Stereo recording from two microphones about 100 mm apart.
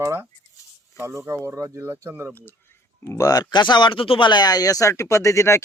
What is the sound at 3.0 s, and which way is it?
Speech, 30° left (ahead or behind).